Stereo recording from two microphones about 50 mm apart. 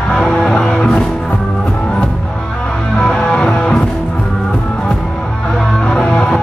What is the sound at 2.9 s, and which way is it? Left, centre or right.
Music, centre.